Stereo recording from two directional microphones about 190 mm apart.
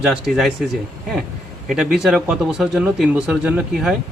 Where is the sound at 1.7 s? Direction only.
Centre (ahead or behind).